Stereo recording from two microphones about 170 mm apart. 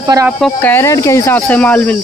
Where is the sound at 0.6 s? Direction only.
15° left (ahead or behind).